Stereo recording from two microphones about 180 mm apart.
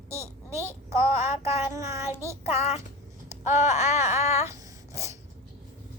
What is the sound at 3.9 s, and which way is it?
Female singing, 15° right (ahead or behind).